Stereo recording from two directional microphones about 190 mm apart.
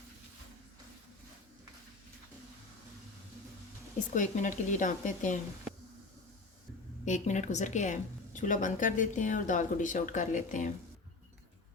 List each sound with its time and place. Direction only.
4.1 s a woman's voice: 40° left (ahead or behind)
7.0 s a woman's voice: 40° left (ahead or behind)